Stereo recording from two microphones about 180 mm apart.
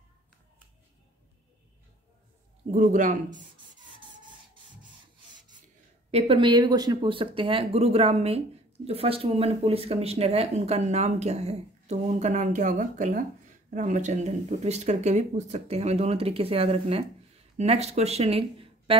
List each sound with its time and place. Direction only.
2.7 s speech: 45° right (ahead or behind)
6.1 s speech: 30° right (ahead or behind)